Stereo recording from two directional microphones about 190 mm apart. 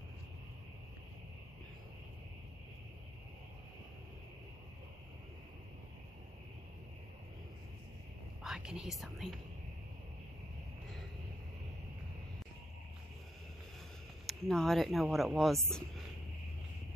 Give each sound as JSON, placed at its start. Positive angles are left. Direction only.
{"t": 8.5, "sound": "speech", "side_deg": -5}
{"t": 14.2, "sound": "speech", "side_deg": 0}